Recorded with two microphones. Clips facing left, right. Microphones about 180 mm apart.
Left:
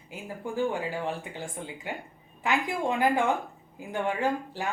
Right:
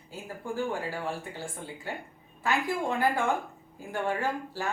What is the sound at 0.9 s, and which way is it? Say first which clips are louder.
Speech: left 2 dB; 20° left (ahead or behind).